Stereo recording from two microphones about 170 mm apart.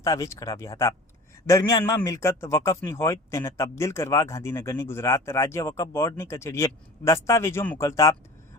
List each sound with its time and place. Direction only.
0.0 s a man's voice: 20° left (ahead or behind)